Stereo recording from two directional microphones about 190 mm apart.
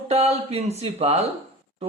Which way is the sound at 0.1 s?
35° right (ahead or behind).